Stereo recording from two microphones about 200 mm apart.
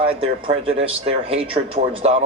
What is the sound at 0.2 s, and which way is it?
Speech, 30° right (ahead or behind).